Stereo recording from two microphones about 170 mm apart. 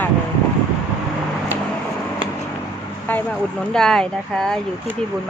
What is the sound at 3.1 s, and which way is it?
Speech, 10° left (ahead or behind).